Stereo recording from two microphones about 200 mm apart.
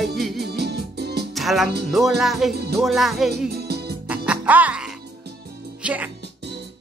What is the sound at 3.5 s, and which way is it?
Music, 55° right (ahead or behind).